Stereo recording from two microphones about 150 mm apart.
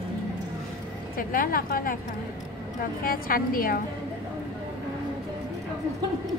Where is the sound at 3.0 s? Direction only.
75° left (ahead or behind).